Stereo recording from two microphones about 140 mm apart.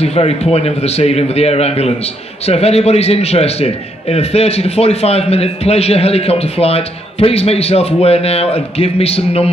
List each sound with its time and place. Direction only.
0.0 s a man's voice: 45° left (ahead or behind)